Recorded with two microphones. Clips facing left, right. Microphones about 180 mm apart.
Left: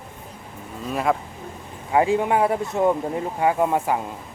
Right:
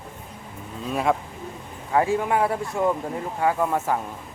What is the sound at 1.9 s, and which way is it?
Speech, 15° left (ahead or behind).